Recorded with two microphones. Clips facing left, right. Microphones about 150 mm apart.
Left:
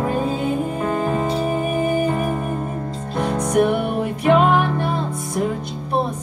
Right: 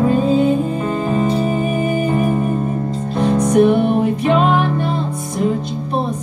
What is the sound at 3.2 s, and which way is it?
Music, 25° right (ahead or behind).